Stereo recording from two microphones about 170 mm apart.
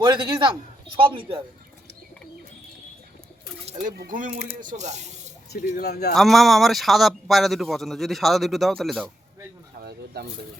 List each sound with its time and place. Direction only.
0.0 s a man's voice: 30° right (ahead or behind)
3.7 s speech: 50° right (ahead or behind)
4.6 s speech: 45° right (ahead or behind)
5.5 s speech: 65° left (ahead or behind)
6.1 s a man's voice: centre (ahead or behind)
10.2 s speech: 70° right (ahead or behind)